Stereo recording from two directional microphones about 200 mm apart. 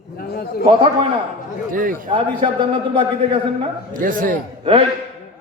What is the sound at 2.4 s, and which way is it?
A man's voice, 30° right (ahead or behind).